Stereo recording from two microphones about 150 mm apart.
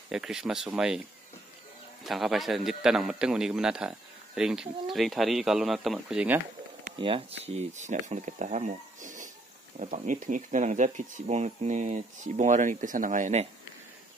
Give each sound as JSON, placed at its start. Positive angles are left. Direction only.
{"t": 0.1, "sound": "a man's voice", "side_deg": -5}
{"t": 2.0, "sound": "a man's voice", "side_deg": 0}
{"t": 7.0, "sound": "speech", "side_deg": -40}